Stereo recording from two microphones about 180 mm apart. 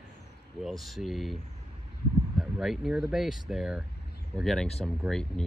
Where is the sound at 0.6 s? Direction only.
Centre (ahead or behind).